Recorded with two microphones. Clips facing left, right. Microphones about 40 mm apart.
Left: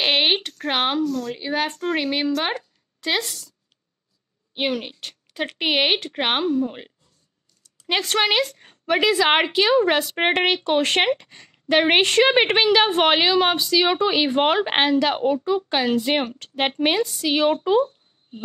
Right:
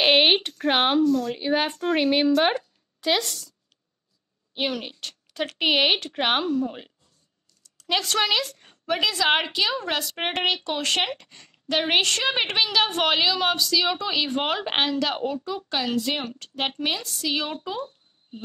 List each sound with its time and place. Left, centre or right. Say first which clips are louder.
0.0 s a sound: right 1 dB; centre
0.5 s speech: right 1 dB; centre
4.6 s speech: left 5 dB; centre
7.8 s a woman's voice: left 3 dB; left
10.6 s a woman's voice: left 6 dB; left
16.3 s a woman's voice: left 5 dB; left